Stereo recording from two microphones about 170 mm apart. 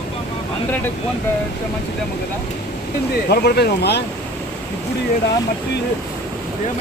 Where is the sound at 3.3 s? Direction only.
70° left (ahead or behind).